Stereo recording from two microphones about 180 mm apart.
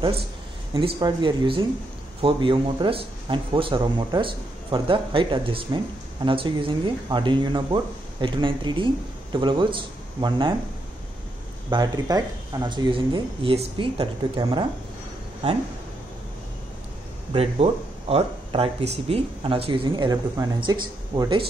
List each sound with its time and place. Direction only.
0.7 s speech: 25° right (ahead or behind)
11.7 s speech: 20° right (ahead or behind)
17.3 s speech: 35° right (ahead or behind)